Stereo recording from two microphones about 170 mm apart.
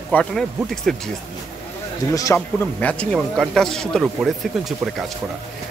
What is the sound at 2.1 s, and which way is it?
Speech, 20° left (ahead or behind).